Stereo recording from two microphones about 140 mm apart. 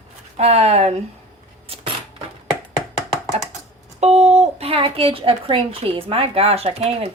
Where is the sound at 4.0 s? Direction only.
50° right (ahead or behind).